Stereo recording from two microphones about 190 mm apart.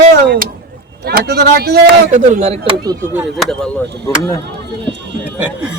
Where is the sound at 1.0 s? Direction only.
55° right (ahead or behind); by 2.6 s 35° right (ahead or behind).